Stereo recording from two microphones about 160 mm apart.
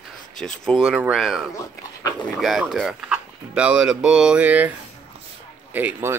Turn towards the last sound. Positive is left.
turn(degrees=-15)  # may be behind; listen again after turning